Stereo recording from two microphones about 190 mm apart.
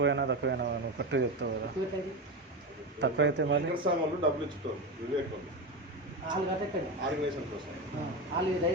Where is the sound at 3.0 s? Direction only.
65° right (ahead or behind).